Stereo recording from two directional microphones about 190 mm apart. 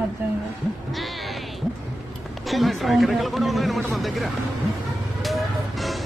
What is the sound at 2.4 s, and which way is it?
Speech, centre (ahead or behind).